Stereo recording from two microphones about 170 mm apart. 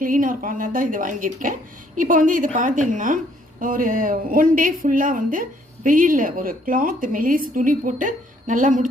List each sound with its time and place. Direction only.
0.0 s speech: 55° right (ahead or behind)